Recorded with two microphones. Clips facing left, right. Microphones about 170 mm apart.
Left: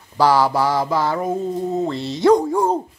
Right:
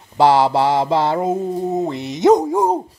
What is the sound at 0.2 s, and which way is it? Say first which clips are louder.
Mantra: right 2 dB; 25° right (ahead or behind).